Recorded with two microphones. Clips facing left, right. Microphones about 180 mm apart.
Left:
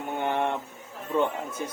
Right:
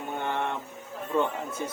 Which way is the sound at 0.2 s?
15° left (ahead or behind).